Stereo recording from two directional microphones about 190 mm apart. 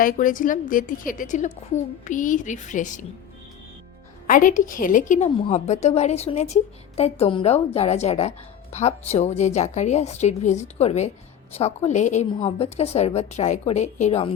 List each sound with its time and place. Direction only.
0.0 s a woman's voice: 45° left (ahead or behind)
4.3 s a woman's voice: 45° left (ahead or behind)
5.3 s a woman's voice: 30° left (ahead or behind)